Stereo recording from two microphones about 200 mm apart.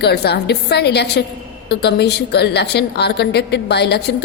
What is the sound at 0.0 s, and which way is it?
A woman's voice, 55° left (ahead or behind).